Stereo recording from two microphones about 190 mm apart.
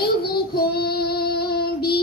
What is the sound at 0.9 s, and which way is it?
Music, 55° left (ahead or behind).